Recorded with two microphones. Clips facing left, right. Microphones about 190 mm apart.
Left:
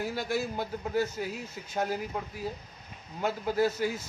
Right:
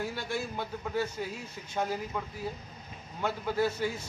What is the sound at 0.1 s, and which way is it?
Speech, 40° left (ahead or behind).